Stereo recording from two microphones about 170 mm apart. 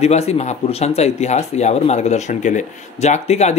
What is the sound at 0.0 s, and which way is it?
Speech, 40° left (ahead or behind).